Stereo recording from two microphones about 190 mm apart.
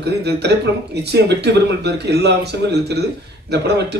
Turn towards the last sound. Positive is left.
turn(degrees=-60)  # may be behind; listen again after turning